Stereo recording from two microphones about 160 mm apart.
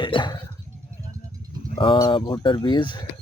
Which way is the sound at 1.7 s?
35° left (ahead or behind).